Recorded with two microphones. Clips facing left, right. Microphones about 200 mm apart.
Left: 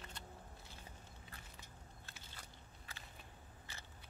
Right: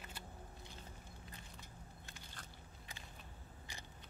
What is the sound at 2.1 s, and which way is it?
Biting, 5° left (ahead or behind).